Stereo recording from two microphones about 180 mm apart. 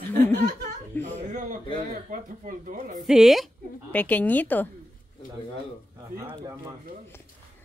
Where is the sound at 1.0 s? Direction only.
45° right (ahead or behind).